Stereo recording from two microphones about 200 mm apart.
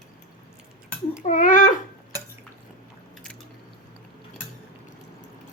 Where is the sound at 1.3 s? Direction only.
40° left (ahead or behind).